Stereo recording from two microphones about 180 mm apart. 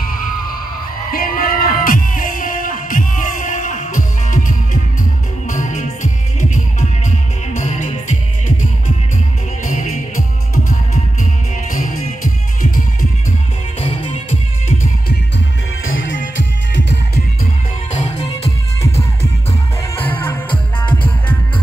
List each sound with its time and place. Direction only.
1.1 s music: 50° left (ahead or behind)
7.5 s music: 40° left (ahead or behind)
11.7 s music: 50° left (ahead or behind)
15.8 s music: 90° left
17.9 s music: 40° left (ahead or behind)
20.0 s music: 10° left (ahead or behind)